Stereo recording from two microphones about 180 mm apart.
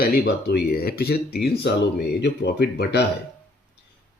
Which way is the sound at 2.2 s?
70° left (ahead or behind).